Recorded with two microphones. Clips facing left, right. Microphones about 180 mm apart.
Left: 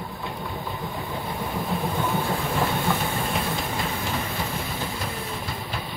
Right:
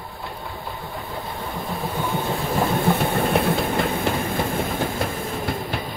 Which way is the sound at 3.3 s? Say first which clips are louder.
Right 7 dB; 60° right (ahead or behind).